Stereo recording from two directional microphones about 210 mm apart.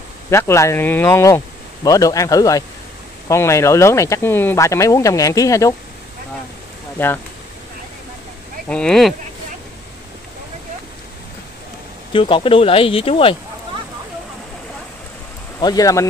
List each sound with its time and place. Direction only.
0.3 s speech: 10° left (ahead or behind)
7.0 s speech: 10° left (ahead or behind)
8.6 s speech: 5° left (ahead or behind)
12.1 s speech: 25° left (ahead or behind)
15.6 s speech: 15° left (ahead or behind)